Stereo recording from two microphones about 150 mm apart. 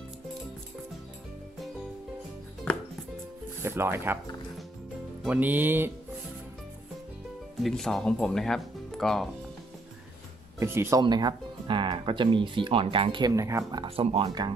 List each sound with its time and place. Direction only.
2.7 s music: 10° left (ahead or behind)
3.6 s music: 15° right (ahead or behind)
5.2 s music: 10° right (ahead or behind)
7.6 s speech: centre (ahead or behind)
10.6 s music: 20° right (ahead or behind)
11.0 s speech: 25° right (ahead or behind)
13.3 s speech: 20° right (ahead or behind)
13.8 s speech: 40° right (ahead or behind)